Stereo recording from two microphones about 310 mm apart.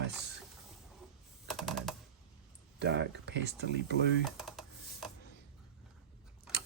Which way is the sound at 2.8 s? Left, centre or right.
Right.